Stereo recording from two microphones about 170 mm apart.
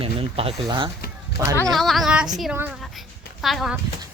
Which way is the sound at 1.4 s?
70° left (ahead or behind).